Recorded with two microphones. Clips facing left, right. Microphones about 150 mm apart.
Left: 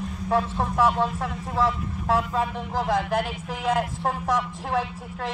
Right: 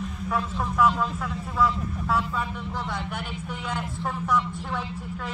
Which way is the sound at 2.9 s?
90° left.